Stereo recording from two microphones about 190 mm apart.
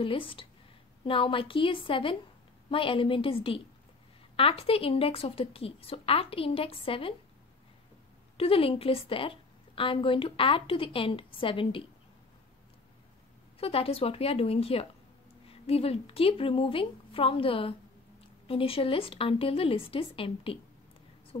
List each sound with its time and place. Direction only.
0.0 s a woman's voice: 25° left (ahead or behind)
8.4 s a woman's voice: 30° left (ahead or behind)
13.6 s a woman's voice: 30° left (ahead or behind)